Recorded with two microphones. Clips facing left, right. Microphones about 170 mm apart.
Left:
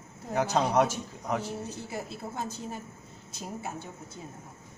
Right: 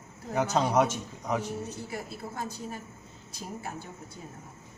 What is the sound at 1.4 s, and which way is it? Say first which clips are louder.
A woman's voice: right 1 dB; 25° left (ahead or behind).